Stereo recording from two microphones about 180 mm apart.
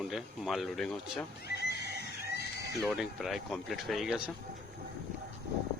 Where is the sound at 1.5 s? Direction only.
65° left (ahead or behind).